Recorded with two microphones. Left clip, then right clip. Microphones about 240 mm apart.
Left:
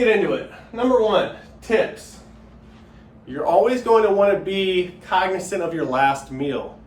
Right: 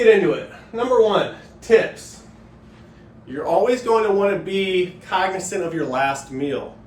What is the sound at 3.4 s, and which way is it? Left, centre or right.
Speech, centre.